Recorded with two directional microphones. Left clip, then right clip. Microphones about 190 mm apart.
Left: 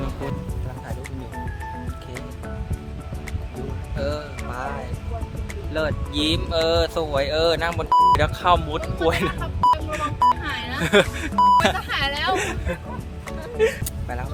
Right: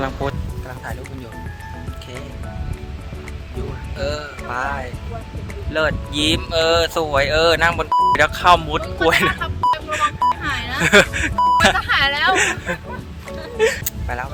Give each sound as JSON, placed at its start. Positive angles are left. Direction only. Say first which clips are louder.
{"t": 3.9, "sound": "music", "louder": "right 3 dB", "side_deg": -10}
{"t": 5.7, "sound": "speech", "louder": "right 5 dB", "side_deg": -10}
{"t": 10.8, "sound": "speech", "louder": "right 6 dB", "side_deg": -10}
{"t": 11.3, "sound": "speech", "louder": "right 1 dB", "side_deg": 0}
{"t": 12.4, "sound": "speech", "louder": "right 8 dB", "side_deg": -10}
{"t": 13.6, "sound": "speech", "louder": "right 3 dB", "side_deg": -25}
{"t": 13.8, "sound": "a sound", "louder": "right 6 dB", "side_deg": 0}